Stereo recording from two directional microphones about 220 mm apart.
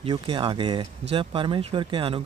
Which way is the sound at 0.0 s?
25° right (ahead or behind).